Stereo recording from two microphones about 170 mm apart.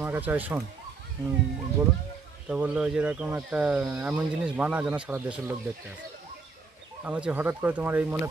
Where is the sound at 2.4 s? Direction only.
5° right (ahead or behind).